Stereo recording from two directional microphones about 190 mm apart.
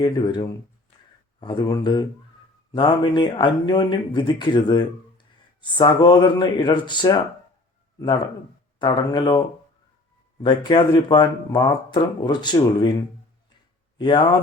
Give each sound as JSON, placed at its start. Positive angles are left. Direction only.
{"t": 0.0, "sound": "speech", "side_deg": 25}
{"t": 10.4, "sound": "speech", "side_deg": 25}
{"t": 14.0, "sound": "speech", "side_deg": 25}